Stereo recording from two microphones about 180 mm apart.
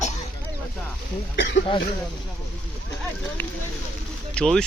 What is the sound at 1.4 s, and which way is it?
Speech, 70° left (ahead or behind).